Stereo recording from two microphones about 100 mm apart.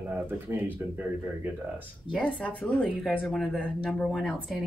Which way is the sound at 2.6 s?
Centre (ahead or behind).